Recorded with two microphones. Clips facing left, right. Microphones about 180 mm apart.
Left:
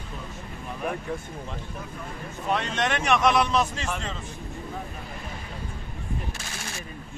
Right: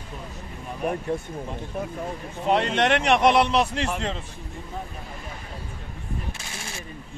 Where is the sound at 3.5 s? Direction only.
30° right (ahead or behind).